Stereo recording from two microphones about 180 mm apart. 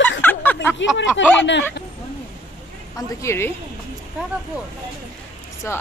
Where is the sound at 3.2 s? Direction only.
15° left (ahead or behind).